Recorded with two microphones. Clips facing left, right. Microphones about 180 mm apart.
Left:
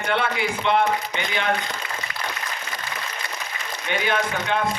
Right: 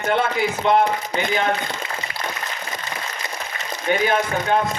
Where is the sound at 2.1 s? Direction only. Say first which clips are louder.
Right 2 dB; 25° right (ahead or behind).